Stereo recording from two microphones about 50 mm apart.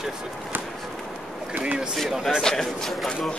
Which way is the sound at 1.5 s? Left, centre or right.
Right.